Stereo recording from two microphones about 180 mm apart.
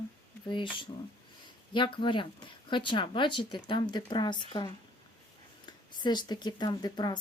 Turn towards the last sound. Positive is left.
turn(degrees=25)  # may be behind; listen again after turning